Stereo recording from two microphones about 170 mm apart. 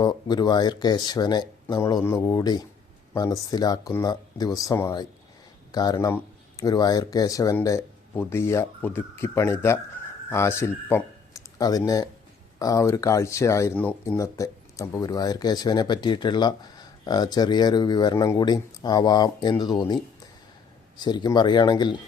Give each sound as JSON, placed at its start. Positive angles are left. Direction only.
{"t": 0.0, "sound": "speech", "side_deg": 25}
{"t": 21.0, "sound": "speech", "side_deg": 25}